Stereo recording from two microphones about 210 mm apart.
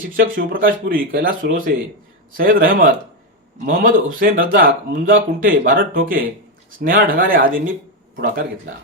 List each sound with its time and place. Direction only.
0.2 s speech: 45° right (ahead or behind)